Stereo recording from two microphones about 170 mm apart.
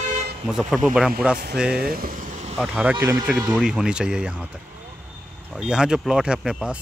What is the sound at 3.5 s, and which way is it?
Speech, 5° right (ahead or behind).